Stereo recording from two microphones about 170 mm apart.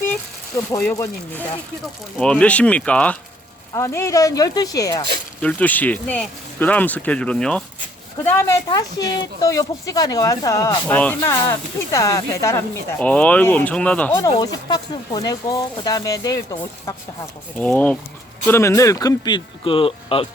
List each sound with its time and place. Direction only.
0.5 s speech: 15° left (ahead or behind)
3.7 s speech: 15° left (ahead or behind)
5.4 s speech: 5° left (ahead or behind)
14.3 s speech: 25° left (ahead or behind)
17.6 s speech: 10° left (ahead or behind); by 20.2 s 30° left (ahead or behind)